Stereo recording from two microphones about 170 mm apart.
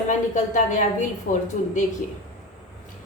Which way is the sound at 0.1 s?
45° left (ahead or behind).